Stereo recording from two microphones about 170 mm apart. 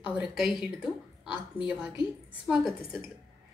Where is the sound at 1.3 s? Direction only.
30° left (ahead or behind).